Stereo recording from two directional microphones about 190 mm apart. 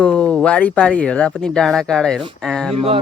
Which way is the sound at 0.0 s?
5° left (ahead or behind).